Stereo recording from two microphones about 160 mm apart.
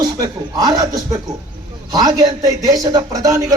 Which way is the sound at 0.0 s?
25° right (ahead or behind).